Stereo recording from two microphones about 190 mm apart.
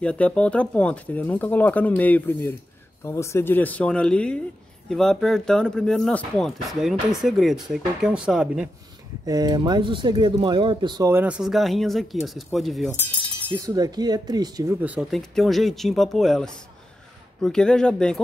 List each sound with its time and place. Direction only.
0.0 s speech: 5° left (ahead or behind)
9.2 s speech: 20° right (ahead or behind); by 12.9 s centre (ahead or behind)
13.5 s speech: 20° right (ahead or behind); by 18.2 s 5° left (ahead or behind)